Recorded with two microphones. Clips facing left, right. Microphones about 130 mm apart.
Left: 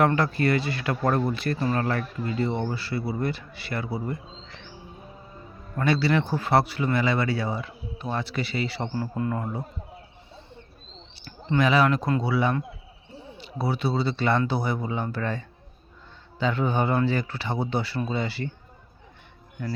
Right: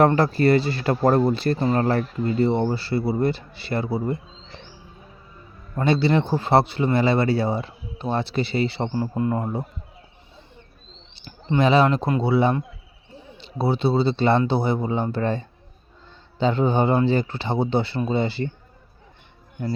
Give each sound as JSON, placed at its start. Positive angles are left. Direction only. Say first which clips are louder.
{"t": 0.0, "sound": "a man's voice", "louder": "right 5 dB", "side_deg": -30}
{"t": 5.7, "sound": "speech", "louder": "right 3 dB", "side_deg": -25}
{"t": 11.1, "sound": "speech", "louder": "right 2 dB", "side_deg": -25}